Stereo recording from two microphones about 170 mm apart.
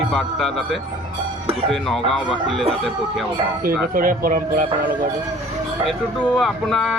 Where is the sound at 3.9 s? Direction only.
55° right (ahead or behind).